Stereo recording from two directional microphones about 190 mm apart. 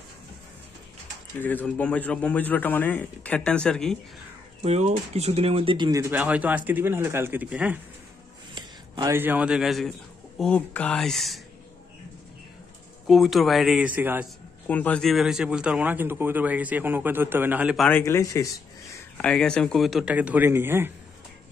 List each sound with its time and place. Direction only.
1.4 s speech: 10° left (ahead or behind)
4.6 s speech: 35° right (ahead or behind); by 7.8 s 10° right (ahead or behind)
8.5 s a sound: 25° right (ahead or behind)
9.1 s speech: 10° right (ahead or behind)
13.0 s speech: centre (ahead or behind)
14.7 s speech: 10° left (ahead or behind)
17.8 s speech: 10° left (ahead or behind); by 20.9 s 10° right (ahead or behind)